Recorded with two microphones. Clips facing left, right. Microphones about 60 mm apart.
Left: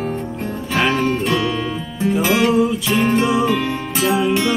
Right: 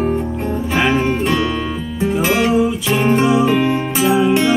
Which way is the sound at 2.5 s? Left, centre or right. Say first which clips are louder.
Right 1 dB; centre.